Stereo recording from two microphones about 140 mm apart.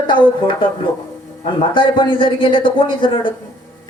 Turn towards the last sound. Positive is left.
turn(degrees=35)  # may be behind; listen again after turning